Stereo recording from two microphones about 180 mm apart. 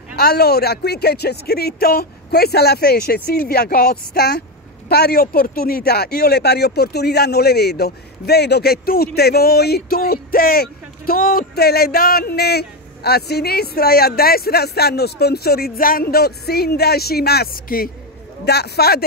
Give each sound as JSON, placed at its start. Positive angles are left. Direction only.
{"t": 0.1, "sound": "speech", "side_deg": 60}
{"t": 18.4, "sound": "speech", "side_deg": 65}